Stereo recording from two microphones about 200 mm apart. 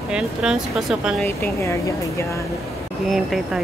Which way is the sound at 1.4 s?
15° left (ahead or behind).